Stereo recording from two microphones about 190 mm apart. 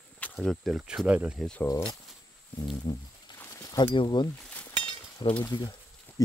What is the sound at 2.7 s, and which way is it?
Speech, 20° left (ahead or behind).